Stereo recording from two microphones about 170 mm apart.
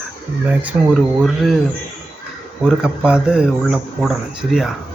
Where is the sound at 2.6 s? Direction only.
5° right (ahead or behind).